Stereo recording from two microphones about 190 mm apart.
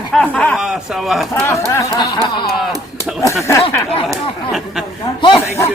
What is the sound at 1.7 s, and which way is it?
Music, 20° left (ahead or behind).